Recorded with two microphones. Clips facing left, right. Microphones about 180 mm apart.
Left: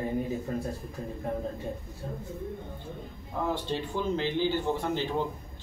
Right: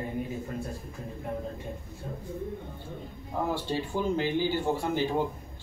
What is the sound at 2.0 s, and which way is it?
Speech, 30° left (ahead or behind).